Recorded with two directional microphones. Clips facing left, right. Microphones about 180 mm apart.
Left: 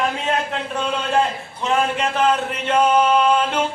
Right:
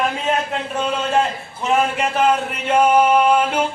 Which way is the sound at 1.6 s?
10° right (ahead or behind).